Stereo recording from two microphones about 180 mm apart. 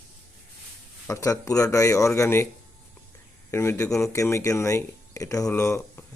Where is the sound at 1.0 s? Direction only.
15° left (ahead or behind).